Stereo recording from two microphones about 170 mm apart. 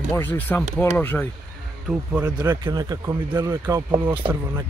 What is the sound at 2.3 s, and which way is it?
Speech, 25° right (ahead or behind).